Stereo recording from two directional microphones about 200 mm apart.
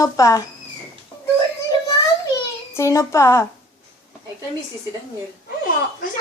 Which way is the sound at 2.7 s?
15° left (ahead or behind).